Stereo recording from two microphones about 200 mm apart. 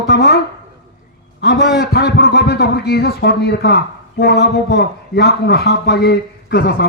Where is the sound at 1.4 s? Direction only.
55° left (ahead or behind).